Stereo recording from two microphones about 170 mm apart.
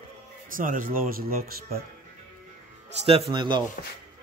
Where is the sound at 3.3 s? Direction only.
25° right (ahead or behind).